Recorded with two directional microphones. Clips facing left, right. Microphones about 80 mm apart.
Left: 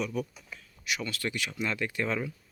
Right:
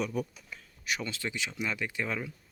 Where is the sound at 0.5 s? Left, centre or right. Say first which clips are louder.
Even; right.